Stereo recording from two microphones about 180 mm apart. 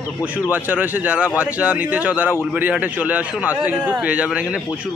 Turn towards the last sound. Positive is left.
turn(degrees=-5)  # may be behind; listen again after turning